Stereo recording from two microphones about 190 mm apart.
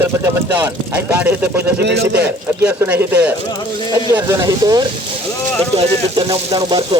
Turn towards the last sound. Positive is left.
turn(degrees=-25)  # may be behind; listen again after turning